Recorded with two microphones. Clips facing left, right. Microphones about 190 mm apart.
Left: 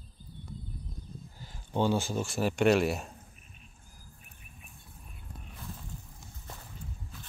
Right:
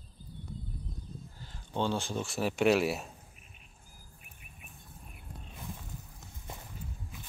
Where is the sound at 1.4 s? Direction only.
10° left (ahead or behind).